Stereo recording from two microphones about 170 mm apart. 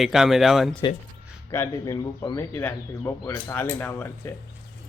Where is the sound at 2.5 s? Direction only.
15° left (ahead or behind).